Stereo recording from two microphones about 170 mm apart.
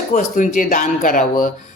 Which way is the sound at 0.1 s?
50° left (ahead or behind).